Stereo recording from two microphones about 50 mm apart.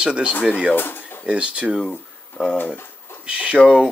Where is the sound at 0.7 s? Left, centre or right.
Left.